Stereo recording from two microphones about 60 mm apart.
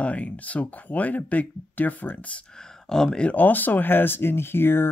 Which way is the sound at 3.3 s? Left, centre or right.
Left.